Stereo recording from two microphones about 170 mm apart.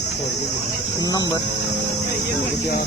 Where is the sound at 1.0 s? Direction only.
20° left (ahead or behind).